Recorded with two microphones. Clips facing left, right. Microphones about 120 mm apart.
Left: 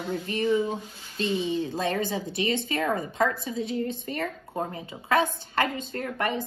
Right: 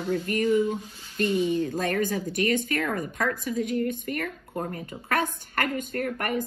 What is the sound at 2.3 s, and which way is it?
Speech, 50° right (ahead or behind).